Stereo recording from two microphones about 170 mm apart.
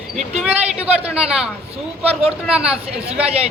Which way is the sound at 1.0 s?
5° right (ahead or behind).